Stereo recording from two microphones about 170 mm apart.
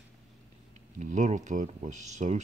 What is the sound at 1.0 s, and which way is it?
Speech, 45° right (ahead or behind).